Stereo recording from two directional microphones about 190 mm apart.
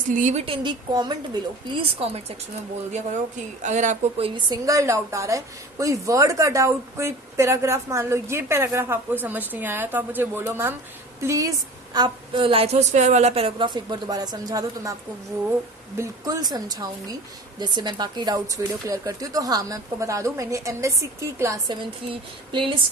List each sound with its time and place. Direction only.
0.1 s a woman's voice: 40° right (ahead or behind)
3.6 s a woman's voice: 40° right (ahead or behind)
4.4 s a woman's voice: 20° right (ahead or behind)
16.0 s a woman's voice: 20° right (ahead or behind)